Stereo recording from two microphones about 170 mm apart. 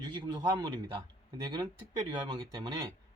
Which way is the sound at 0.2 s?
25° right (ahead or behind).